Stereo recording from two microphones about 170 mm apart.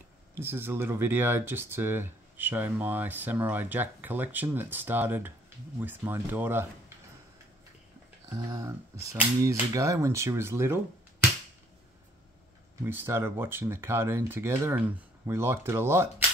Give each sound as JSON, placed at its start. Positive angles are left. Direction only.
{"t": 0.3, "sound": "speech", "side_deg": -15}
{"t": 8.3, "sound": "speech", "side_deg": -25}
{"t": 12.8, "sound": "speech", "side_deg": -15}